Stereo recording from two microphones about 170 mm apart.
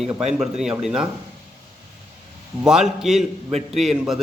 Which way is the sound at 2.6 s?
5° right (ahead or behind).